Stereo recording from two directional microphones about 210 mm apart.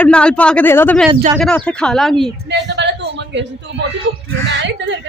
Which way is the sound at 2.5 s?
55° right (ahead or behind).